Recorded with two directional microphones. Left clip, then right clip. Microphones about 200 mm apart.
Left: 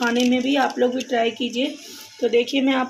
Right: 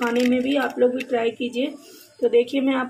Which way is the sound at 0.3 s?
Centre (ahead or behind).